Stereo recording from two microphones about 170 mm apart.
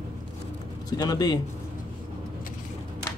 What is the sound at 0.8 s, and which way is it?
Speech, 20° left (ahead or behind).